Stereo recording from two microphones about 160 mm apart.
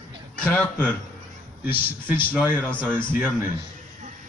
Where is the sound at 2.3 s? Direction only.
5° left (ahead or behind).